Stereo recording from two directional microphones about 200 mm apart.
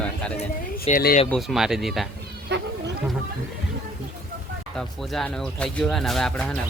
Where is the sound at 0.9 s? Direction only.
35° left (ahead or behind).